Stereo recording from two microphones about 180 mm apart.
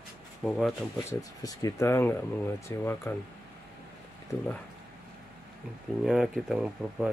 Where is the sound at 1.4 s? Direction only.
20° left (ahead or behind).